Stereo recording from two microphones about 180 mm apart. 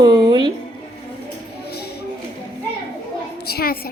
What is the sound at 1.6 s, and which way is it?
Music, 60° left (ahead or behind).